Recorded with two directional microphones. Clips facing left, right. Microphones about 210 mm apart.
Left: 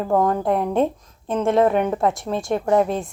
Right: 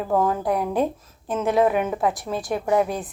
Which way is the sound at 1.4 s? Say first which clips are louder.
Left 2 dB; 5° right (ahead or behind).